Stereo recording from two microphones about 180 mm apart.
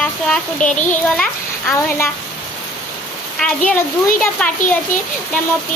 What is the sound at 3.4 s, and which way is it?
Speech, 5° left (ahead or behind).